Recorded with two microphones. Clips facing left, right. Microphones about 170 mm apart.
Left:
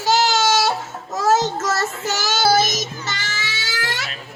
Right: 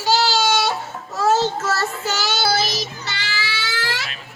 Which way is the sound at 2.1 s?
45° left (ahead or behind).